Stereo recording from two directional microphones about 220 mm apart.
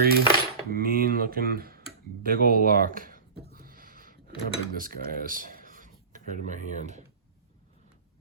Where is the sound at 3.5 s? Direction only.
40° right (ahead or behind).